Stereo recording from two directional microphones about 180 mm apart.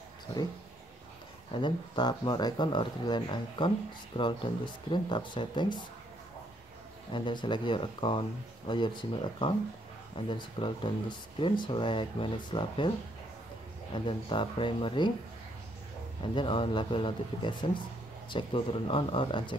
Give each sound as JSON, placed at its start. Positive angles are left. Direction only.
{"t": 1.6, "sound": "speech", "side_deg": 25}
{"t": 7.1, "sound": "speech", "side_deg": 25}
{"t": 13.9, "sound": "speech", "side_deg": 25}
{"t": 16.3, "sound": "speech", "side_deg": 30}